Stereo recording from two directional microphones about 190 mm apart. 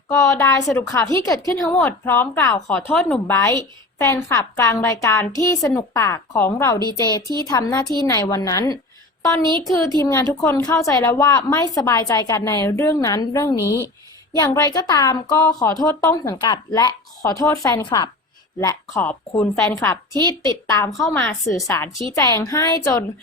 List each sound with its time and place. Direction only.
0.1 s a woman's voice: 15° left (ahead or behind)